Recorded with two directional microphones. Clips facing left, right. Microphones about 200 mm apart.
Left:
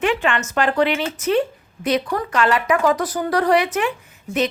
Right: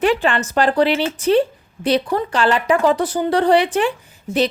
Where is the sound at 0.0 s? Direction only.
35° right (ahead or behind).